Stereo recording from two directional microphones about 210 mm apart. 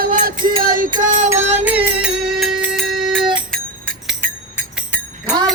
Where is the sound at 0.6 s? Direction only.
40° right (ahead or behind).